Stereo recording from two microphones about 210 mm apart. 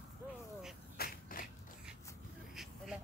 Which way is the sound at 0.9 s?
45° left (ahead or behind).